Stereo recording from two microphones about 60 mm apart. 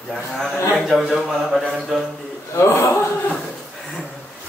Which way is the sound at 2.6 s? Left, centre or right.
Left.